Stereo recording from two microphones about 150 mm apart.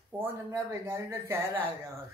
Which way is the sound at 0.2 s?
15° right (ahead or behind).